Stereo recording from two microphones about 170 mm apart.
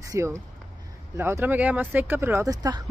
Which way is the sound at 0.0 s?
15° right (ahead or behind).